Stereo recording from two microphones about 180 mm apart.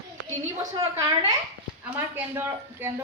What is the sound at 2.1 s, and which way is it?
Speech, 10° right (ahead or behind).